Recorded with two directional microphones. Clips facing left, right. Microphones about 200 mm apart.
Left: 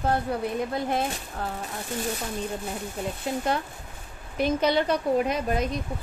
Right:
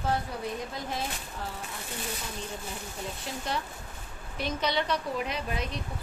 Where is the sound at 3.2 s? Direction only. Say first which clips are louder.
Left 7 dB; 55° left (ahead or behind).